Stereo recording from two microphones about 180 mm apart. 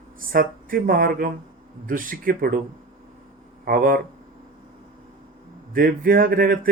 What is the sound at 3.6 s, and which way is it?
Speech, 50° right (ahead or behind).